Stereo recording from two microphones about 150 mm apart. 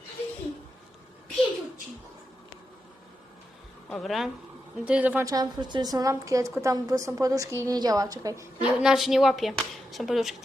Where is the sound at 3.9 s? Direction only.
Centre (ahead or behind).